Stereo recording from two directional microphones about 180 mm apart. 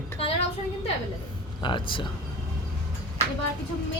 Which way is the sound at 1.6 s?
25° left (ahead or behind).